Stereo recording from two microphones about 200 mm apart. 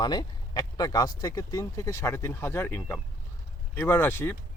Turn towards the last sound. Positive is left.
turn(degrees=10)  # may be behind; listen again after turning